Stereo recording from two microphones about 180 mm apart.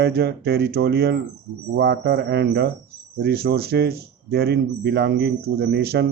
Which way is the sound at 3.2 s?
60° right (ahead or behind).